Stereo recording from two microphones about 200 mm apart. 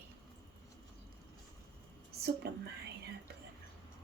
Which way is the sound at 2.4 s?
55° right (ahead or behind).